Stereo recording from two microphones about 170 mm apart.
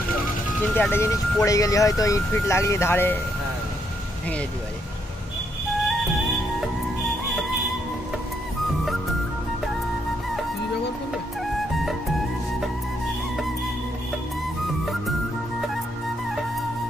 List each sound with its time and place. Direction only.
0.7 s speech: 10° left (ahead or behind)